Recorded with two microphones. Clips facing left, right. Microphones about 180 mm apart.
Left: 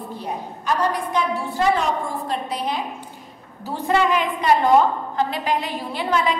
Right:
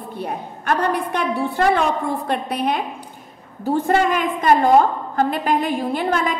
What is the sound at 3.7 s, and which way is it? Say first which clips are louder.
A woman's voice: right 3 dB; 50° right (ahead or behind).